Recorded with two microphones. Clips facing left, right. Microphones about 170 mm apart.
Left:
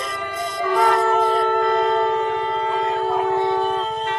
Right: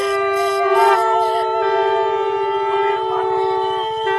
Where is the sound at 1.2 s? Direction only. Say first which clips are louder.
Right 1 dB; 20° right (ahead or behind).